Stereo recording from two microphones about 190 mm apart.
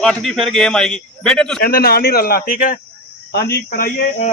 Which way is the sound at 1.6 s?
50° left (ahead or behind).